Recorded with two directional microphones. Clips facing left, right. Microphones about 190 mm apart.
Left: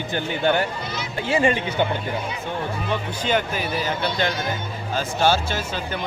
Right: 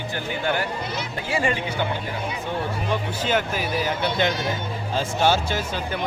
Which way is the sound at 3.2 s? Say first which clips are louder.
Left 1 dB; 5° right (ahead or behind).